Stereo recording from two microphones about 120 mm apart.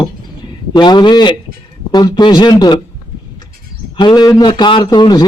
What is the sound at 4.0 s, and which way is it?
A man's voice, 35° left (ahead or behind).